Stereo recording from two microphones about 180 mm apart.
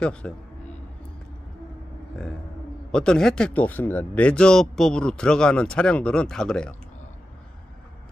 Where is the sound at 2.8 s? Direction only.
5° left (ahead or behind).